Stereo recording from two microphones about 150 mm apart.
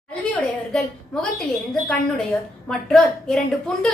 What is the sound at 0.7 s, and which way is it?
Speech, 5° left (ahead or behind).